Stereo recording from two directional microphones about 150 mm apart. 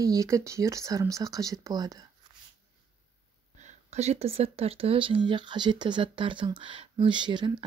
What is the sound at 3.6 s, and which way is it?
Speech, 50° right (ahead or behind).